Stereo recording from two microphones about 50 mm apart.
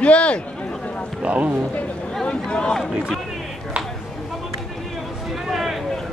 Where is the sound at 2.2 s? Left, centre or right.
Left.